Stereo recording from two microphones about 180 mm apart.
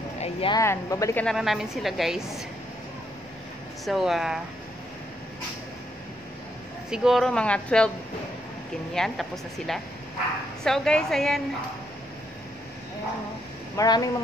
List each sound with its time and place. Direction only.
0.2 s a sound: 30° left (ahead or behind)
0.6 s speech: 15° left (ahead or behind)
1.2 s a woman's voice: centre (ahead or behind)
3.8 s a woman's voice: centre (ahead or behind)
6.9 s a woman's voice: 5° right (ahead or behind)
8.9 s a woman's voice: centre (ahead or behind)
13.7 s speech: 20° left (ahead or behind)